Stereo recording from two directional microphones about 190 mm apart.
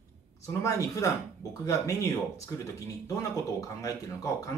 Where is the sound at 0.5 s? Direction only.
15° left (ahead or behind).